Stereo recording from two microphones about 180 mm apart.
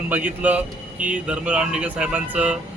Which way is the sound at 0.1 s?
10° right (ahead or behind).